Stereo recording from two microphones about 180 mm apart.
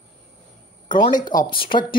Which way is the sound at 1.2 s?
25° left (ahead or behind).